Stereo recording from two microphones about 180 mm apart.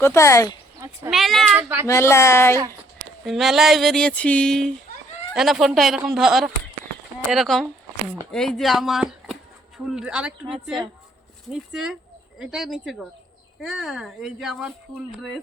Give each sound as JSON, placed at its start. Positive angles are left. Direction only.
{"t": 0.0, "sound": "speech", "side_deg": 15}
{"t": 1.1, "sound": "speech", "side_deg": 0}
{"t": 1.5, "sound": "speech", "side_deg": -10}
{"t": 1.9, "sound": "speech", "side_deg": 15}
{"t": 3.2, "sound": "speech", "side_deg": 0}